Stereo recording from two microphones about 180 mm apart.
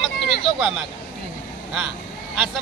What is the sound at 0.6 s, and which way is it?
Speech, 5° right (ahead or behind).